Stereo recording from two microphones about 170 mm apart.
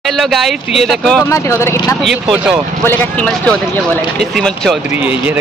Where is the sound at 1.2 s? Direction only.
15° left (ahead or behind).